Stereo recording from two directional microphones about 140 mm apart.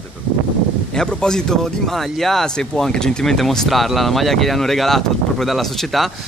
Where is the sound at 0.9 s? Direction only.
5° left (ahead or behind).